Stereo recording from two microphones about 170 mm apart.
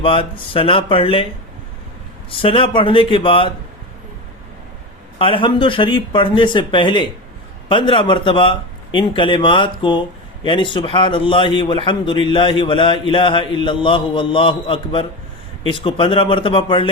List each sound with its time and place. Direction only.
0.0 s speech: 30° left (ahead or behind)
2.3 s speech: 30° left (ahead or behind)
5.2 s a man's voice: 30° left (ahead or behind)